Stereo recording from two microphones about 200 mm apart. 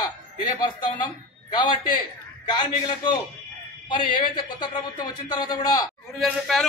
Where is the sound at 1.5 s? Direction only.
25° left (ahead or behind).